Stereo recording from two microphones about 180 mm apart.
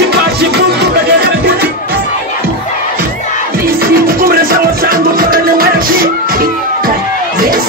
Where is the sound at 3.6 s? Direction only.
55° right (ahead or behind).